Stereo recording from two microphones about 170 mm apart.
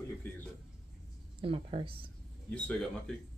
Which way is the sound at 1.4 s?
30° right (ahead or behind).